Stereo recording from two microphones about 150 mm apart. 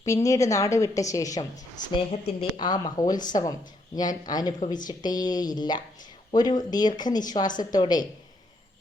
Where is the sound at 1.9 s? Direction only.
35° left (ahead or behind).